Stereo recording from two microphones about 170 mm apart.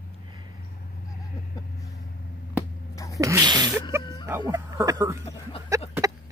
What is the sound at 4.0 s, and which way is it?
Music, 25° left (ahead or behind).